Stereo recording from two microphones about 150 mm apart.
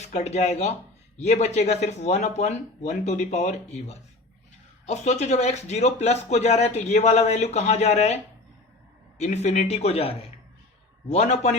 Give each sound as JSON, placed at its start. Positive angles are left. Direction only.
{"t": 0.0, "sound": "speech", "side_deg": 50}